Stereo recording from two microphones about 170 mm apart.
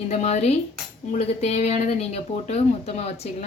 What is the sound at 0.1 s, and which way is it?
Speech, 40° left (ahead or behind).